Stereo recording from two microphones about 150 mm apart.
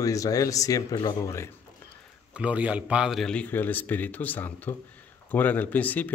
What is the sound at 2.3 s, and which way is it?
Speech, 10° right (ahead or behind).